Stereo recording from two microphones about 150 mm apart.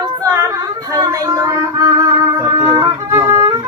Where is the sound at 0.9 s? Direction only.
20° right (ahead or behind).